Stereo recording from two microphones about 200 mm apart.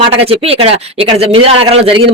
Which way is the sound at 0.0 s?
30° right (ahead or behind).